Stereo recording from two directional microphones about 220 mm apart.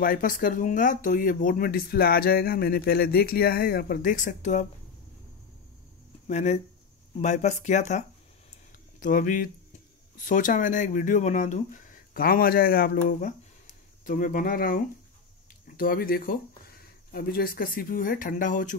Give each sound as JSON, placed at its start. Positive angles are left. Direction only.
{"t": 0.0, "sound": "speech", "side_deg": 40}
{"t": 6.2, "sound": "speech", "side_deg": 30}
{"t": 9.0, "sound": "speech", "side_deg": 40}